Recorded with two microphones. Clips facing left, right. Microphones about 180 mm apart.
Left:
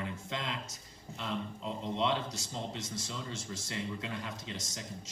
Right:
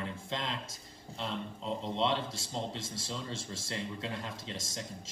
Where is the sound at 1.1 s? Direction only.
30° right (ahead or behind).